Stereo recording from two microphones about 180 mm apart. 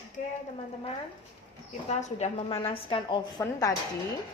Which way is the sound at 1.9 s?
40° left (ahead or behind).